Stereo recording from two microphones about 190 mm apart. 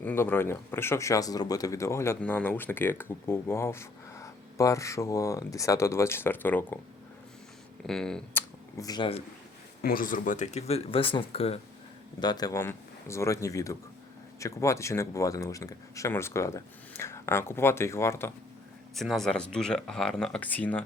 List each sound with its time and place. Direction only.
0.0 s speech: 10° left (ahead or behind)
7.9 s speech: 5° left (ahead or behind); by 9.2 s 25° left (ahead or behind)
9.8 s speech: 45° left (ahead or behind); by 18.3 s 15° left (ahead or behind)
18.9 s speech: centre (ahead or behind)